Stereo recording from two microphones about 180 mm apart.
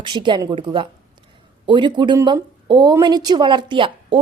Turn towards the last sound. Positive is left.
turn(degrees=-25)  # may be behind; listen again after turning